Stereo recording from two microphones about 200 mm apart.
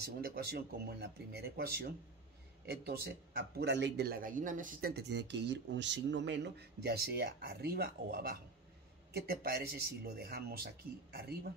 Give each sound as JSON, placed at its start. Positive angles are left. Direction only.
{"t": 0.0, "sound": "a man's voice", "side_deg": -50}